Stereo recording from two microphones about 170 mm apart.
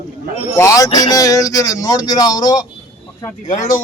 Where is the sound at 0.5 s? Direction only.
20° left (ahead or behind).